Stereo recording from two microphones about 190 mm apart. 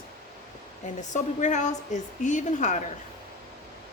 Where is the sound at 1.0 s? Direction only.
40° left (ahead or behind).